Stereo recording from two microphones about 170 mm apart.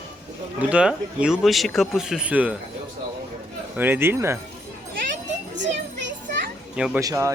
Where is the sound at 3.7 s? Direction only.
10° right (ahead or behind).